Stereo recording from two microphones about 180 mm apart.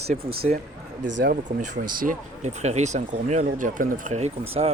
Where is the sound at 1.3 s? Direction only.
45° right (ahead or behind).